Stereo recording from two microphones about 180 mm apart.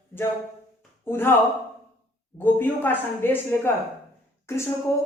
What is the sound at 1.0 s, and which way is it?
Speech, 10° left (ahead or behind).